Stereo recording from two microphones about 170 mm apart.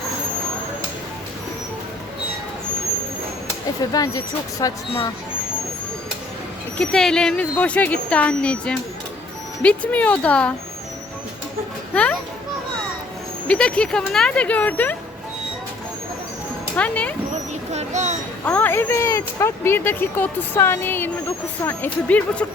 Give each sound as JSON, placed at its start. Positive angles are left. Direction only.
{"t": 3.9, "sound": "speech", "side_deg": 20}
{"t": 6.7, "sound": "speech", "side_deg": 5}
{"t": 11.9, "sound": "speech", "side_deg": 5}
{"t": 13.5, "sound": "speech", "side_deg": 5}
{"t": 16.7, "sound": "speech", "side_deg": 10}
{"t": 17.7, "sound": "a sound", "side_deg": -40}
{"t": 18.4, "sound": "speech", "side_deg": 10}